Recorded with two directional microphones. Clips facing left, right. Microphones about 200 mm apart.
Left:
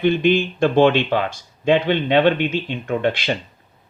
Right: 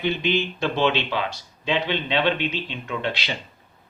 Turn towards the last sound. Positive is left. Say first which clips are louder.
# left 8 dB
turn(degrees=50)  # may be behind; listen again after turning